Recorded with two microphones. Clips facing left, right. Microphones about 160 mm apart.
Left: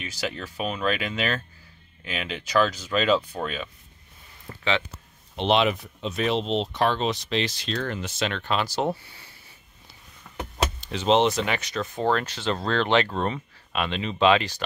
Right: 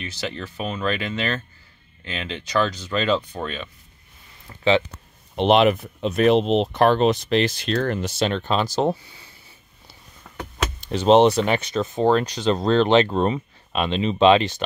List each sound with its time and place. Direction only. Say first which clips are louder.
0.0 s speech: right 1 dB; 10° left (ahead or behind)
5.3 s speech: right 6 dB; 50° right (ahead or behind); by 8.9 s 35° right (ahead or behind)
10.8 s speech: right 7 dB; 45° right (ahead or behind); by 14.6 s 25° right (ahead or behind)